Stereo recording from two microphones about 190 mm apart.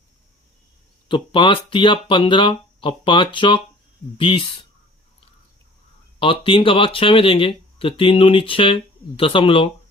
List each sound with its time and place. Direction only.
1.0 s speech: 25° left (ahead or behind)
6.1 s speech: 30° left (ahead or behind)